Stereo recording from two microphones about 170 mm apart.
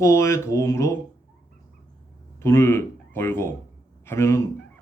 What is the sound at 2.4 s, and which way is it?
A man's voice, 15° left (ahead or behind).